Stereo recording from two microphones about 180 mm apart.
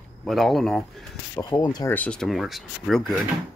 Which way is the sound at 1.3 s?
20° left (ahead or behind).